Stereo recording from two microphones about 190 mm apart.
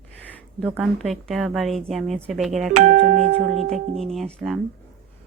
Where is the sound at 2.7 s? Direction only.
40° right (ahead or behind).